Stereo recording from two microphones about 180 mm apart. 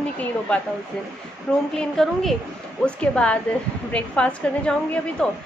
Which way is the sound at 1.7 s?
Centre (ahead or behind).